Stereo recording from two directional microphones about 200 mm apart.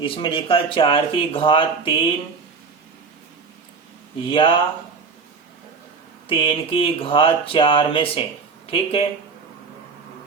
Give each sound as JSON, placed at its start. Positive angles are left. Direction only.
{"t": 0.0, "sound": "speech", "side_deg": 25}
{"t": 4.3, "sound": "speech", "side_deg": 25}
{"t": 6.2, "sound": "speech", "side_deg": 25}